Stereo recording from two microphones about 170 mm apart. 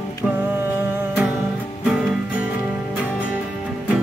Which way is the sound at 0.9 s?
10° right (ahead or behind).